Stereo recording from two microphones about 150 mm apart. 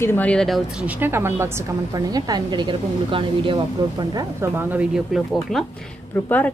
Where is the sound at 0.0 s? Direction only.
10° left (ahead or behind).